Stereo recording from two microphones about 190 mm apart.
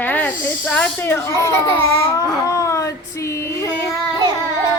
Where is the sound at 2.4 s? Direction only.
15° left (ahead or behind).